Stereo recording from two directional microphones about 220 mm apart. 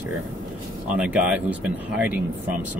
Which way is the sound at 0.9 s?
5° right (ahead or behind).